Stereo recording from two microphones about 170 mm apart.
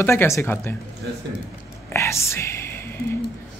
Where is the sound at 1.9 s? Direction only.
15° left (ahead or behind).